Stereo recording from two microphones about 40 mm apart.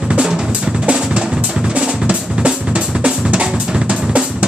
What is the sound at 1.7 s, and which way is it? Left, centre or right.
Drum, right.